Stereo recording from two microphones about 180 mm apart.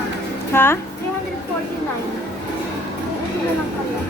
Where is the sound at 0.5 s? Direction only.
15° left (ahead or behind).